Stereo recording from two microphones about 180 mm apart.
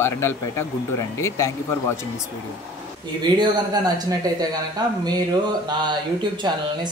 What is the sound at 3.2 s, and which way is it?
Speech, 25° right (ahead or behind).